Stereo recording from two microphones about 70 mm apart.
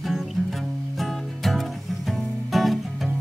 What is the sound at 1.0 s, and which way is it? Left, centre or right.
Music, centre.